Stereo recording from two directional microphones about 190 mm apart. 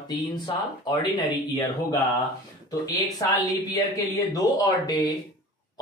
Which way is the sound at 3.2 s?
20° left (ahead or behind).